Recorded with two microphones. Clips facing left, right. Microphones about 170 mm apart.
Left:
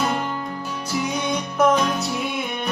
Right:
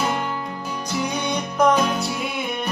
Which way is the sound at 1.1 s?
Centre (ahead or behind).